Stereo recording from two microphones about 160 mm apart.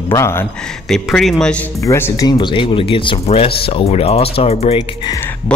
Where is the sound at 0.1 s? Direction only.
15° left (ahead or behind).